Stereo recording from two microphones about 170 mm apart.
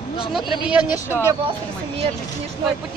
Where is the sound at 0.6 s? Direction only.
5° right (ahead or behind).